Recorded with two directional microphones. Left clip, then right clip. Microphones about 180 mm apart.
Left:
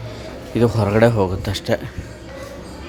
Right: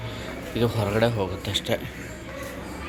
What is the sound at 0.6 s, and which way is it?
Speech, 50° left (ahead or behind).